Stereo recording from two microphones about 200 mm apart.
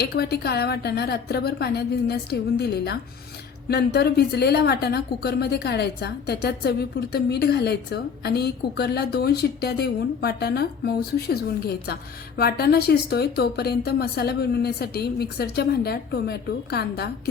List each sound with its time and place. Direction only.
0.0 s a woman's voice: 55° left (ahead or behind)